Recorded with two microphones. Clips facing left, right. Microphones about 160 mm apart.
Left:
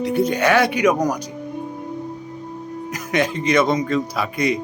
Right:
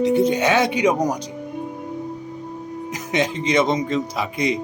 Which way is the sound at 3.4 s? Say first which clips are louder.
Left 1 dB; 25° right (ahead or behind).